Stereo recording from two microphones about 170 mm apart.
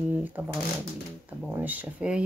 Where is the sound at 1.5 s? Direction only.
10° right (ahead or behind).